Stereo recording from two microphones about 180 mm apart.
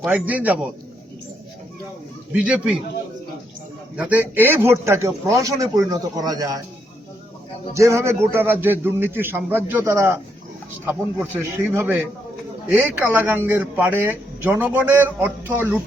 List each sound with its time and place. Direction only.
0.0 s a man's voice: 10° right (ahead or behind)
2.3 s speech: 5° right (ahead or behind)
3.9 s a man's voice: 10° right (ahead or behind)
7.7 s a man's voice: 15° right (ahead or behind)